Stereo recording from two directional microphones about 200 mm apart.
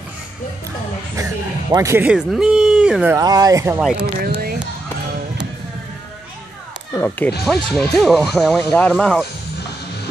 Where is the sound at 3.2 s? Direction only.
20° right (ahead or behind).